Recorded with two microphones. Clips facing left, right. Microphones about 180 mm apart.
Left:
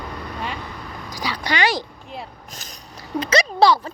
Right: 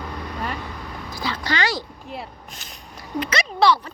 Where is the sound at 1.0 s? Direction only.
15° left (ahead or behind).